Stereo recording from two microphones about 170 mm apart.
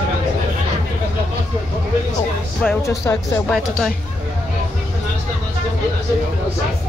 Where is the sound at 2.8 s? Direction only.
20° left (ahead or behind).